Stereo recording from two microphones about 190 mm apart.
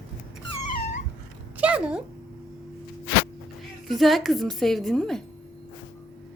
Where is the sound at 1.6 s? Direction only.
5° right (ahead or behind).